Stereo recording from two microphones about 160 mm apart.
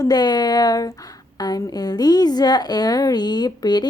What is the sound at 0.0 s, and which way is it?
Speech, 25° left (ahead or behind).